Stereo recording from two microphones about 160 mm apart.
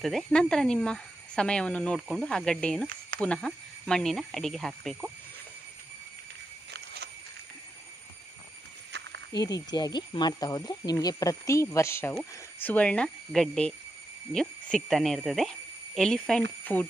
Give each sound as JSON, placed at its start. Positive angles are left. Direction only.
{"t": 0.0, "sound": "speech", "side_deg": 5}
{"t": 2.0, "sound": "speech", "side_deg": -5}
{"t": 6.7, "sound": "a sound", "side_deg": -90}
{"t": 9.3, "sound": "speech", "side_deg": 25}